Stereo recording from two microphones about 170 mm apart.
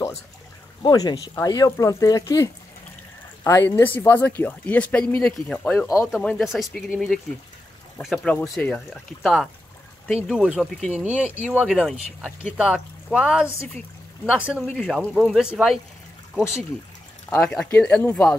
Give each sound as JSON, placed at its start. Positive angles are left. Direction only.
{"t": 0.8, "sound": "speech", "side_deg": 20}
{"t": 8.4, "sound": "speech", "side_deg": 10}